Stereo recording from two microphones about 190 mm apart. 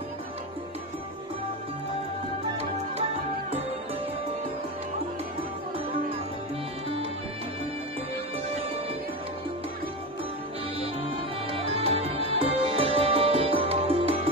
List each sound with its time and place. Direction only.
11.5 s music: 30° right (ahead or behind)